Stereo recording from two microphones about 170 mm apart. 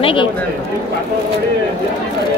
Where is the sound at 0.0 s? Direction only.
30° left (ahead or behind).